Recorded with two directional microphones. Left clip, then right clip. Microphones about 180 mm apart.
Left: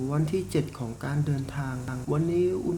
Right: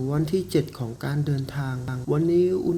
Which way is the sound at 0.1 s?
20° right (ahead or behind).